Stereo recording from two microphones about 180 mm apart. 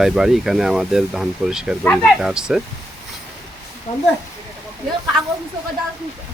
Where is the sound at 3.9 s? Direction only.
35° left (ahead or behind).